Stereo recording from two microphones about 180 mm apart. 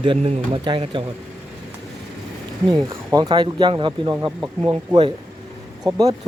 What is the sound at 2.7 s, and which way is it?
Speech, 20° right (ahead or behind).